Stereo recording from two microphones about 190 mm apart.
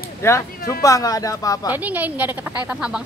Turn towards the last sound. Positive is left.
turn(degrees=-5)  # may be behind; listen again after turning